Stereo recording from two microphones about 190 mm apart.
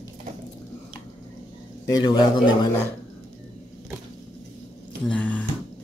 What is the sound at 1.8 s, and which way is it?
Speech, 20° left (ahead or behind).